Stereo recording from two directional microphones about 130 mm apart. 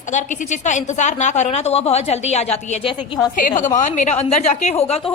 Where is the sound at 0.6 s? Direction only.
65° left (ahead or behind).